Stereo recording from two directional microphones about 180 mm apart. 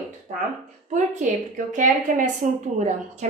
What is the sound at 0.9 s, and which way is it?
A woman's voice, 45° right (ahead or behind).